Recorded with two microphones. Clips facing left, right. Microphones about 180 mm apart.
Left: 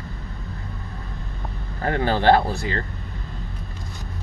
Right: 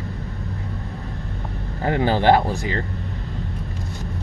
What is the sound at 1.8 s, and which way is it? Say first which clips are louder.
Speech: right 1 dB; 15° right (ahead or behind).